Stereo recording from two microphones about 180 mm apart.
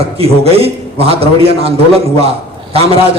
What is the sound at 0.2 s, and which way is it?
A man's voice, 35° right (ahead or behind).